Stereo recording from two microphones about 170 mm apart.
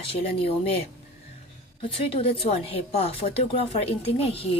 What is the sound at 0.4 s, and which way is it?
Speech, 35° left (ahead or behind).